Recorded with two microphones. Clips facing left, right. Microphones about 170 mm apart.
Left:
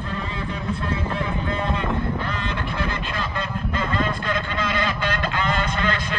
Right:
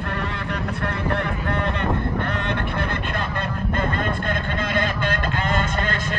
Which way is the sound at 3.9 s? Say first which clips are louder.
Even; 55° right (ahead or behind).